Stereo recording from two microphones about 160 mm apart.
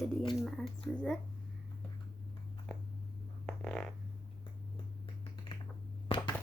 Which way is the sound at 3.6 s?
5° left (ahead or behind).